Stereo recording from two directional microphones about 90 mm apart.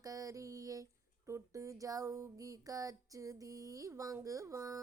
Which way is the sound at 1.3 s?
35° right (ahead or behind).